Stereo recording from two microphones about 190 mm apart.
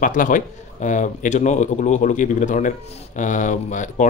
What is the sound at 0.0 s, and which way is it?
Speech, 45° left (ahead or behind).